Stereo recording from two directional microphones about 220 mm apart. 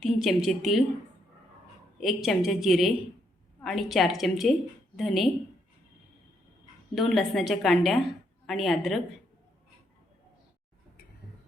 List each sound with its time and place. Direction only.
0.0 s a woman's voice: centre (ahead or behind)
2.0 s a woman's voice: centre (ahead or behind)
6.9 s a woman's voice: centre (ahead or behind)